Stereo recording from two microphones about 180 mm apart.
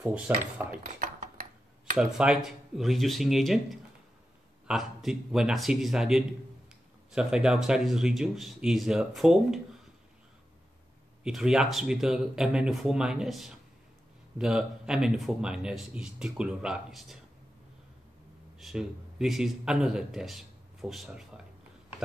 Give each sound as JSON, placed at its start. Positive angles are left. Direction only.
{"t": 0.3, "sound": "speech", "side_deg": -10}
{"t": 0.9, "sound": "a sound", "side_deg": -45}
{"t": 2.0, "sound": "speech", "side_deg": -5}
{"t": 11.2, "sound": "speech", "side_deg": -5}
{"t": 18.6, "sound": "speech", "side_deg": 0}